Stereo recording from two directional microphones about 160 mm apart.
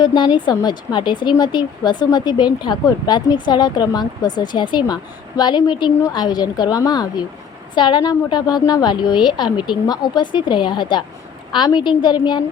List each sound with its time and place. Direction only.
0.0 s speech: 30° left (ahead or behind)